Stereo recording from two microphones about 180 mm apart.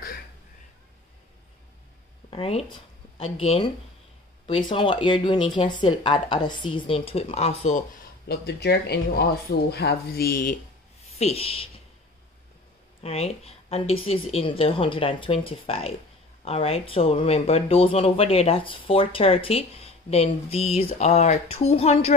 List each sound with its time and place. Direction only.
2.3 s speech: 30° left (ahead or behind)
8.3 s speech: 65° left (ahead or behind)
11.1 s speech: 35° left (ahead or behind)
13.0 s speech: 35° left (ahead or behind)